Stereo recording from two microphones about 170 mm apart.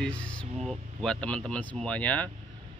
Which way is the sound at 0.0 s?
5° left (ahead or behind).